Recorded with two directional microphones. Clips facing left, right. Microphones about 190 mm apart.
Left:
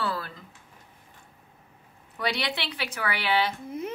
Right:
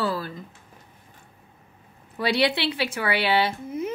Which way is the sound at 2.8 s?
25° right (ahead or behind).